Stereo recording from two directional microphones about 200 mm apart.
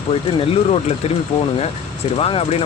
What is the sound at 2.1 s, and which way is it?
Speech, 30° left (ahead or behind).